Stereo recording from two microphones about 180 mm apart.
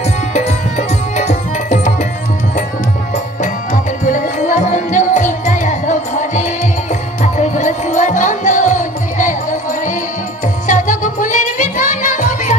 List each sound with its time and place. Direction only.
0.3 s tabla: 40° left (ahead or behind)
3.7 s music: 45° left (ahead or behind)